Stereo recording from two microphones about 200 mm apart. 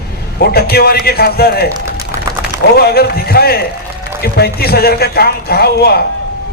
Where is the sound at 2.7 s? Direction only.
50° left (ahead or behind).